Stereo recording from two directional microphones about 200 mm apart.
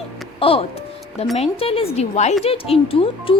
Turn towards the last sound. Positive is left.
turn(degrees=25)  # may be behind; listen again after turning